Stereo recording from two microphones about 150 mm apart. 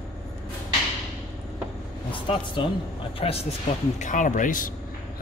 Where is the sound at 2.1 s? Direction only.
35° left (ahead or behind).